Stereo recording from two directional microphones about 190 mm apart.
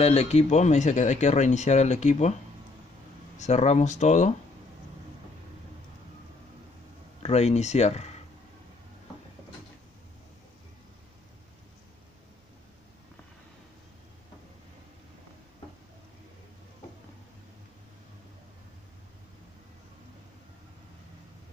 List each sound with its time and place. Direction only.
0.0 s speech: 35° left (ahead or behind)
3.3 s speech: 35° left (ahead or behind)
7.2 s speech: 35° left (ahead or behind)